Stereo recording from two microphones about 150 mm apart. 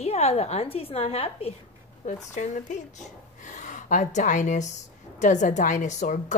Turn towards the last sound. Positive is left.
turn(degrees=55)  # may be behind; listen again after turning